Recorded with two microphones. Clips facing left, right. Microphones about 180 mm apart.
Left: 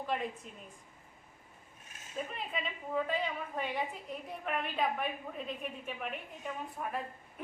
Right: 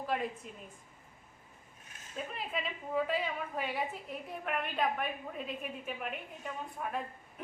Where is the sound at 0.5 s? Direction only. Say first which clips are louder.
Right 2 dB; centre (ahead or behind).